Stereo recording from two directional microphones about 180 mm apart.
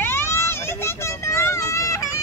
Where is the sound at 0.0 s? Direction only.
15° left (ahead or behind).